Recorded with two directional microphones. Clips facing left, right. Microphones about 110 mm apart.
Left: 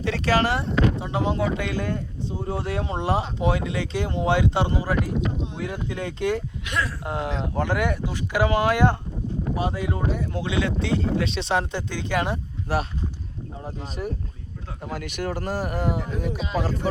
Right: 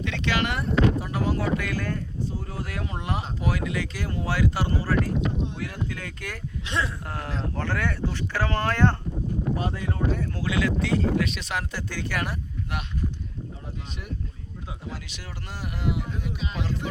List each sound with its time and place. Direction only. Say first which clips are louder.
0.0 s speech: left 5 dB; 35° left (ahead or behind)
6.7 s speech: even; 25° right (ahead or behind)
7.0 s speech: left 5 dB; 20° left (ahead or behind)
12.7 s speech: left 7 dB; 35° left (ahead or behind)
14.8 s speech: left 14 dB; 55° left (ahead or behind)